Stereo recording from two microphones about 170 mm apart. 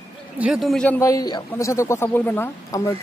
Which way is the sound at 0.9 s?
20° left (ahead or behind).